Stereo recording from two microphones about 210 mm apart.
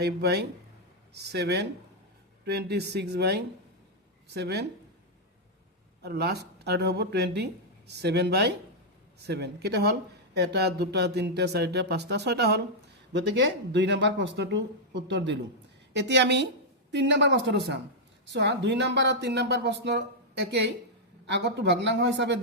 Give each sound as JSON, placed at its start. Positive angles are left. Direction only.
{"t": 0.0, "sound": "speech", "side_deg": -50}
{"t": 6.0, "sound": "speech", "side_deg": -50}
{"t": 15.9, "sound": "speech", "side_deg": -55}